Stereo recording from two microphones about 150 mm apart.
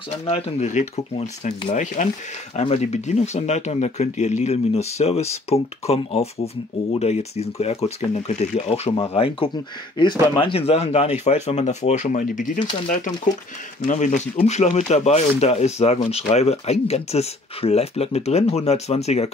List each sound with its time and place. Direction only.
0.3 s speech: 50° left (ahead or behind)
2.5 s speech: 45° left (ahead or behind)